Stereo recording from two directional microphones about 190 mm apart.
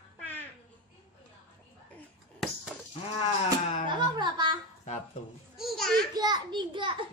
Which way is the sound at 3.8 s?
25° right (ahead or behind).